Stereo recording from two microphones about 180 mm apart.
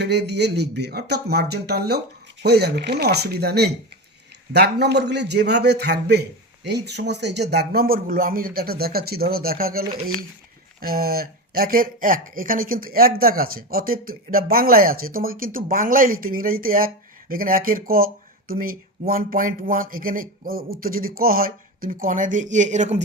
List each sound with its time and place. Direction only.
0.0 s speech: 70° right (ahead or behind); by 23.0 s 40° right (ahead or behind)